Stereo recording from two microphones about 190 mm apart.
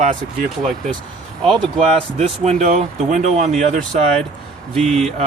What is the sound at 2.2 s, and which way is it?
Speech, 35° right (ahead or behind).